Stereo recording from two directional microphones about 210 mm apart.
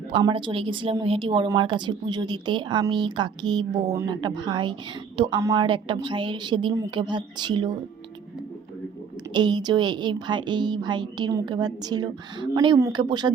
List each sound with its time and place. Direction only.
0.1 s a woman's voice: 20° right (ahead or behind)
9.3 s a woman's voice: 20° right (ahead or behind)